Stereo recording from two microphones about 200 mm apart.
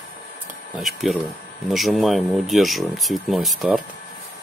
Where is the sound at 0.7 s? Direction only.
Centre (ahead or behind).